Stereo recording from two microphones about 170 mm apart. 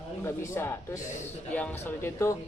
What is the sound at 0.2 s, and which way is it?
Speech, 15° left (ahead or behind).